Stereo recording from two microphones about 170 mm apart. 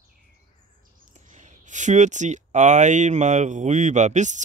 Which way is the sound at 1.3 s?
45° right (ahead or behind).